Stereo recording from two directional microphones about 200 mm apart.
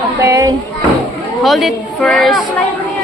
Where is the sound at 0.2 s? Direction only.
15° right (ahead or behind).